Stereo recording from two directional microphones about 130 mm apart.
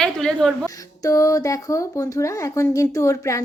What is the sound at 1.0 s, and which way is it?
A woman's voice, 25° left (ahead or behind).